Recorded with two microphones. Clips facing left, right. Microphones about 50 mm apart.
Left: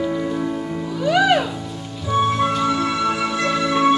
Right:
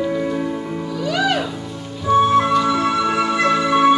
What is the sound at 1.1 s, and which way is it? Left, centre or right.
Music, centre.